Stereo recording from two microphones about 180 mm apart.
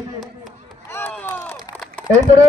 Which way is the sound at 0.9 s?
10° left (ahead or behind).